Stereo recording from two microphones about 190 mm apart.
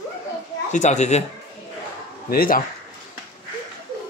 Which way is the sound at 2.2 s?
50° left (ahead or behind).